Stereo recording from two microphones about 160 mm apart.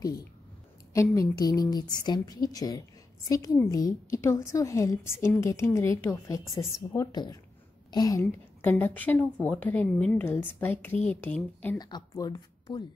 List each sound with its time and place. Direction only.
0.9 s a woman's voice: 20° left (ahead or behind)
11.8 s a woman's voice: 25° left (ahead or behind)